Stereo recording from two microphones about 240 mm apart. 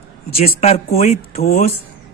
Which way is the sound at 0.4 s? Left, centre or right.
Left.